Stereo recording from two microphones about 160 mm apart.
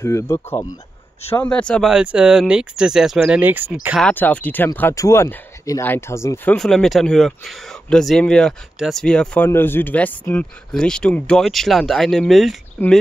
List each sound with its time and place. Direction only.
0.0 s speech: 15° left (ahead or behind); by 3.7 s 10° right (ahead or behind)
4.0 s speech: 10° left (ahead or behind)